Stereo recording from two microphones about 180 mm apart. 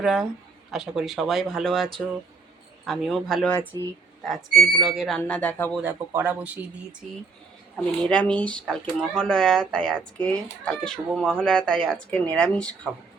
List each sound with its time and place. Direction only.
0.0 s speech: centre (ahead or behind)
5.8 s speech: 10° right (ahead or behind)
8.0 s speech: 5° left (ahead or behind)